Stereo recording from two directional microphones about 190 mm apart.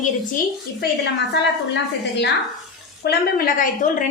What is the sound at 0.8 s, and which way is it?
A woman's voice, 60° left (ahead or behind).